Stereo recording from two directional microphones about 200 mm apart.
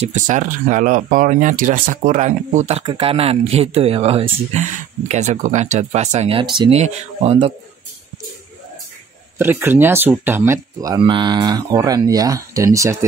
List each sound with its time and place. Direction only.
0.0 s speech: 40° right (ahead or behind)
9.4 s speech: 10° right (ahead or behind)